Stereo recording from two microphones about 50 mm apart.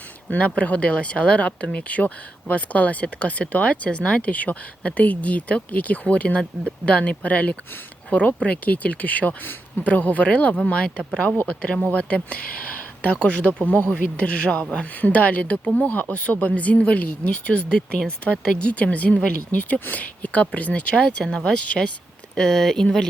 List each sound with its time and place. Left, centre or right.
0.3 s speech: left
22.4 s speech: centre